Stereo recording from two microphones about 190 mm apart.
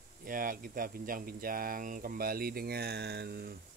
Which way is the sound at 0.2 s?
45° right (ahead or behind).